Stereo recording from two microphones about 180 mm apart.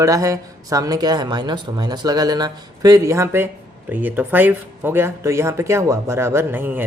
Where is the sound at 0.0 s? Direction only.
20° right (ahead or behind).